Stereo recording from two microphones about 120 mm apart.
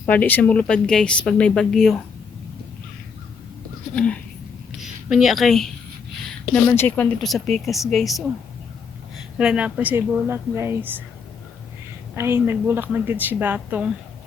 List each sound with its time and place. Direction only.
0.0 s speech: 15° left (ahead or behind)
3.9 s speech: 10° left (ahead or behind)
4.8 s speech: 5° right (ahead or behind)
6.5 s speech: 20° left (ahead or behind)
7.2 s speech: centre (ahead or behind); by 11.0 s 15° right (ahead or behind)
12.1 s speech: 20° right (ahead or behind)